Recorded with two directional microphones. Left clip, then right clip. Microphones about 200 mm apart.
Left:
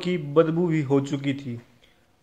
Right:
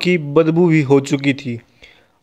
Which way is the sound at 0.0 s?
35° right (ahead or behind).